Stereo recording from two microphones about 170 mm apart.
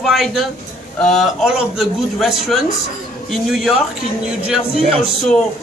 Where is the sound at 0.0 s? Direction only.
Centre (ahead or behind).